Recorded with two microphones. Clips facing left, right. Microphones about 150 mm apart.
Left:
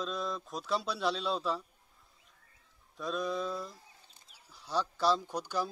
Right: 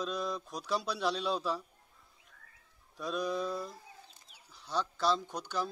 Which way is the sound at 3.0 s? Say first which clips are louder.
Even; centre (ahead or behind).